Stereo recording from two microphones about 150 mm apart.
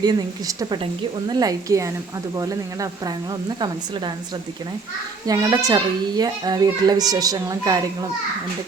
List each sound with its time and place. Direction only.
0.0 s a child's voice: 25° right (ahead or behind)
5.2 s a child's voice: 25° right (ahead or behind)